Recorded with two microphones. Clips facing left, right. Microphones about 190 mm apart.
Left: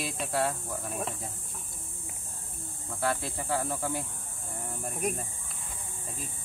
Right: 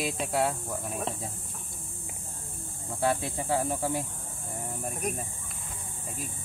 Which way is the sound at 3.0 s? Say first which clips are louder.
Right 3 dB; 20° right (ahead or behind).